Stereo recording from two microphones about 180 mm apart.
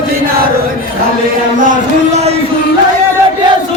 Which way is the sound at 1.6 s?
40° right (ahead or behind).